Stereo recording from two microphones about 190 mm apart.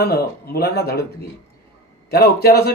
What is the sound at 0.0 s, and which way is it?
A man's voice, 55° left (ahead or behind).